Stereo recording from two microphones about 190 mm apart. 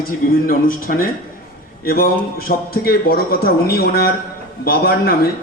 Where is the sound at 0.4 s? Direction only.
50° left (ahead or behind).